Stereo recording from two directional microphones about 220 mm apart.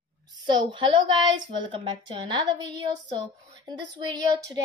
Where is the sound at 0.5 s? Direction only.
20° right (ahead or behind).